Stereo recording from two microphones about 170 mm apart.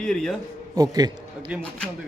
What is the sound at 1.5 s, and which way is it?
Speech, 5° right (ahead or behind).